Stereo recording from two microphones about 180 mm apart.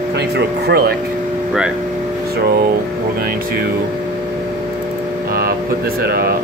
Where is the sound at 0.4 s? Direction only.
60° right (ahead or behind).